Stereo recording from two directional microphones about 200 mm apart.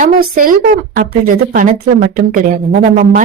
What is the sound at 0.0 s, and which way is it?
Speech, 45° right (ahead or behind).